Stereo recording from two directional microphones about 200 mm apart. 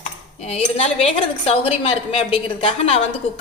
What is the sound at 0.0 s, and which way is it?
Cutlery, 35° left (ahead or behind).